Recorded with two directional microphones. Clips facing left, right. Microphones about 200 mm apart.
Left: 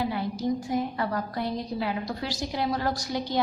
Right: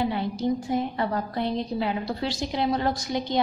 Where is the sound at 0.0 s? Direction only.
25° right (ahead or behind).